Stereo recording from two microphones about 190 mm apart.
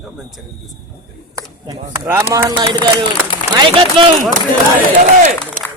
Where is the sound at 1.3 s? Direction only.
15° right (ahead or behind).